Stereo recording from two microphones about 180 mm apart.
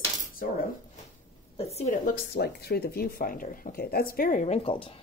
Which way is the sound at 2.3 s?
65° left (ahead or behind).